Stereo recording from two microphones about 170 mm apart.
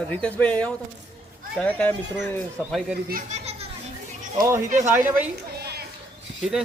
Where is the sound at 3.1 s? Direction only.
45° right (ahead or behind).